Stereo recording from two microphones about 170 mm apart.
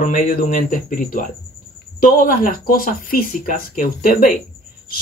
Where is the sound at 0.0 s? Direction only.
50° left (ahead or behind).